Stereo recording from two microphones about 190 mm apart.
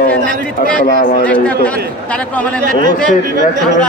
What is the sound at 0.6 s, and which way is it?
Speech, 45° left (ahead or behind).